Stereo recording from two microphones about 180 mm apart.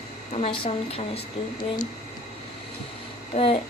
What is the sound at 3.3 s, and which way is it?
Speech, 40° left (ahead or behind).